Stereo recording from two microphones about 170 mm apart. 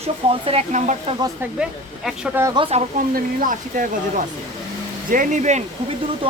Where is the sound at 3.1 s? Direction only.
55° right (ahead or behind).